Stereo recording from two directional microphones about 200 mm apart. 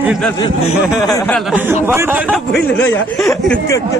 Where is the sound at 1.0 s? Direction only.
15° left (ahead or behind).